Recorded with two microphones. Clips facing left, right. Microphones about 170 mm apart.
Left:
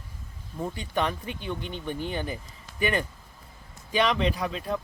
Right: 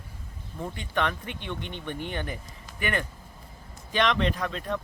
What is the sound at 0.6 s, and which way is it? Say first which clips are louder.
Speech: left 1 dB; 10° left (ahead or behind).